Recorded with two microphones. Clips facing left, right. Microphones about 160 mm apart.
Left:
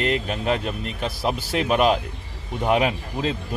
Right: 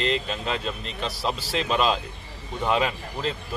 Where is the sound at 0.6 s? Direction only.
15° left (ahead or behind).